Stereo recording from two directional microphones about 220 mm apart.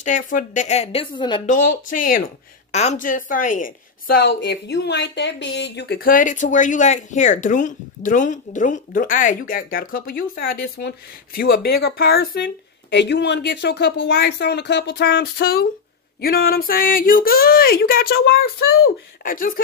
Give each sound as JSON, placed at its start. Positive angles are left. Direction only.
{"t": 0.0, "sound": "a woman's voice", "side_deg": 35}
{"t": 1.4, "sound": "a woman's voice", "side_deg": 35}